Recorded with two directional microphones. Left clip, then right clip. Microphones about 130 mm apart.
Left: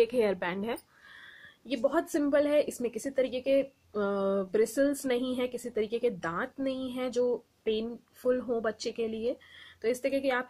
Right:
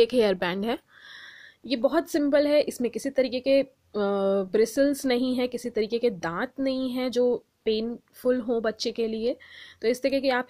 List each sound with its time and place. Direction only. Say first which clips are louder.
0.0 s a woman's voice: right 5 dB; 40° right (ahead or behind)